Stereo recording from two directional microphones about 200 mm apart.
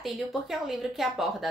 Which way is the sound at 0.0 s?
Centre (ahead or behind).